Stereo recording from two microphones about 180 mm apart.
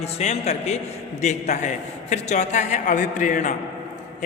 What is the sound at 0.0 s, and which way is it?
A man's voice, 35° left (ahead or behind).